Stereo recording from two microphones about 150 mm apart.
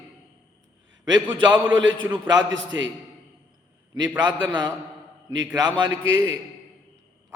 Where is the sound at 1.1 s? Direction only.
30° right (ahead or behind).